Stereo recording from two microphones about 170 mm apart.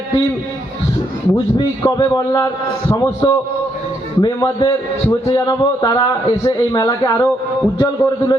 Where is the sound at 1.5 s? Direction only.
25° left (ahead or behind).